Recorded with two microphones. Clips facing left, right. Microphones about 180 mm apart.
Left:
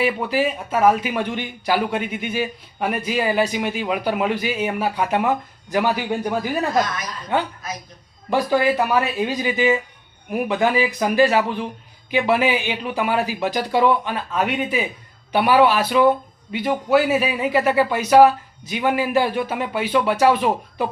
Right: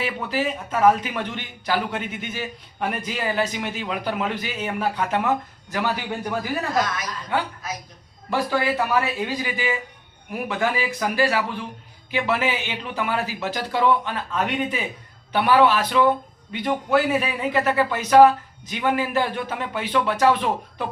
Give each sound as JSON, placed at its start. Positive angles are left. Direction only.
{"t": 0.0, "sound": "speech", "side_deg": 10}